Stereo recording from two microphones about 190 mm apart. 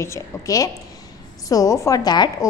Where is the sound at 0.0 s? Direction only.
15° left (ahead or behind).